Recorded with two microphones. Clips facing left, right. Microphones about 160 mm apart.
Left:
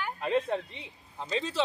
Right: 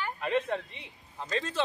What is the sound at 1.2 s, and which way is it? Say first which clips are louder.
Speech: left 1 dB; 15° left (ahead or behind).